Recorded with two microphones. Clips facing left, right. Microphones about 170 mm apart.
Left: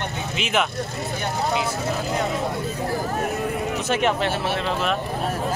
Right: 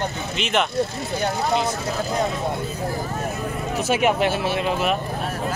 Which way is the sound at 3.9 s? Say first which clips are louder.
Right 3 dB; 10° right (ahead or behind).